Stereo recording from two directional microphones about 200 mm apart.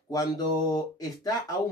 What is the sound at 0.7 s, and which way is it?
Speech, 15° left (ahead or behind).